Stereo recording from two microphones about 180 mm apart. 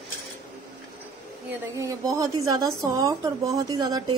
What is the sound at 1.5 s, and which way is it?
A woman's voice, 15° right (ahead or behind).